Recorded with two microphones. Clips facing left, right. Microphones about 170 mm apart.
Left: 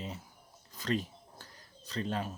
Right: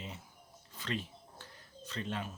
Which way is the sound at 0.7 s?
40° left (ahead or behind).